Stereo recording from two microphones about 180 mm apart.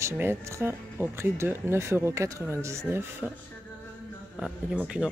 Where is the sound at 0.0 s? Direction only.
15° right (ahead or behind).